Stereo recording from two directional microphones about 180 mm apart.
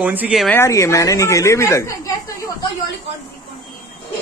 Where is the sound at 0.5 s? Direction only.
15° left (ahead or behind).